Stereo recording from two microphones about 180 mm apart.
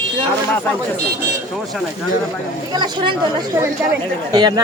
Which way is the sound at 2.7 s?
25° right (ahead or behind).